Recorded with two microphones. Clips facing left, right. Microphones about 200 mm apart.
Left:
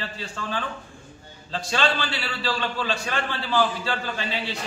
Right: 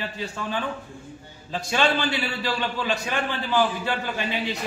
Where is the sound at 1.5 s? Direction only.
15° right (ahead or behind).